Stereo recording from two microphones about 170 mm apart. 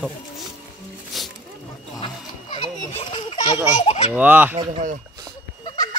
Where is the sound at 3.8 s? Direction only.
40° left (ahead or behind).